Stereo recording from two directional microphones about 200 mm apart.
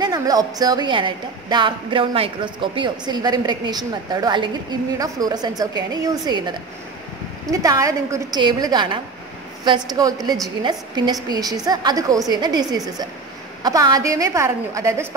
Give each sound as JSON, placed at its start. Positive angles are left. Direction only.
{"t": 0.0, "sound": "a woman's voice", "side_deg": -20}